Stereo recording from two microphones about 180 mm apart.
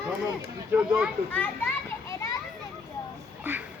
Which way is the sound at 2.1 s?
15° left (ahead or behind).